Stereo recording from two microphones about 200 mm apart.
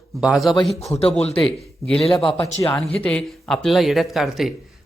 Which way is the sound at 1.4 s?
5° left (ahead or behind).